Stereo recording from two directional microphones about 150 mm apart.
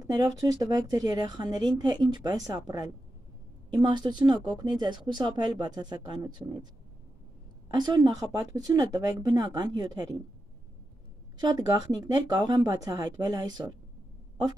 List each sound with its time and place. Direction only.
0.4 s speech: 25° right (ahead or behind)
7.7 s speech: 30° right (ahead or behind)
11.3 s speech: 30° right (ahead or behind)